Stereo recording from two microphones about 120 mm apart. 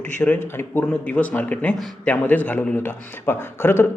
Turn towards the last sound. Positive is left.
turn(degrees=20)  # may be behind; listen again after turning